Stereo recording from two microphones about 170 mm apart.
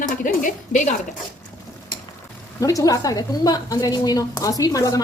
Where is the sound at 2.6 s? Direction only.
20° left (ahead or behind).